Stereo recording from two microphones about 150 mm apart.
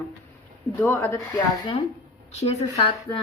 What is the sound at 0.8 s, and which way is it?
Speech, 20° left (ahead or behind).